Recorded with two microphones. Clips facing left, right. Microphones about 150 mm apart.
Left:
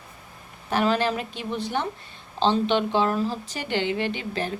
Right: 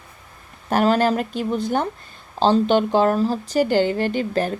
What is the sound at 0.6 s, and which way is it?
Speech, 45° right (ahead or behind).